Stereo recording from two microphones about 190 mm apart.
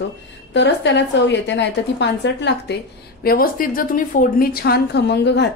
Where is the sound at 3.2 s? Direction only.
50° left (ahead or behind).